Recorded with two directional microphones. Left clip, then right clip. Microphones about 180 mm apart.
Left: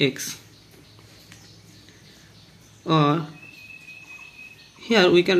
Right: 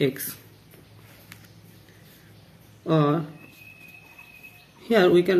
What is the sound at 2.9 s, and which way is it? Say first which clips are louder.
Speech: left 2 dB; 15° left (ahead or behind).